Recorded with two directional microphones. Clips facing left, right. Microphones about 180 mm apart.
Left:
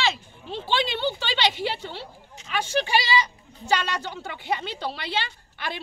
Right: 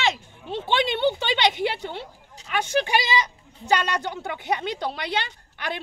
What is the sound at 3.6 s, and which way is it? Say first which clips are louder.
Speech: right 2 dB; 15° right (ahead or behind).